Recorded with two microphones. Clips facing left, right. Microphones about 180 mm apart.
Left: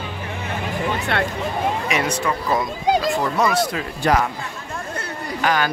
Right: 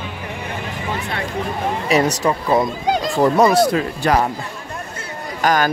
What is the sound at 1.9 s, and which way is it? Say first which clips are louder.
Speech: right 5 dB; 35° right (ahead or behind).